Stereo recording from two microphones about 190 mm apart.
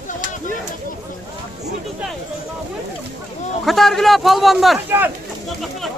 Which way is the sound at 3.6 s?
Centre (ahead or behind).